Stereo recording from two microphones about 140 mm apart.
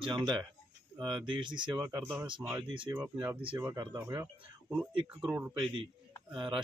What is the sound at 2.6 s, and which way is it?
Speech, 35° right (ahead or behind).